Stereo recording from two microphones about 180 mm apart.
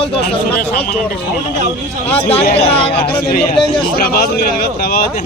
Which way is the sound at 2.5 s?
35° left (ahead or behind).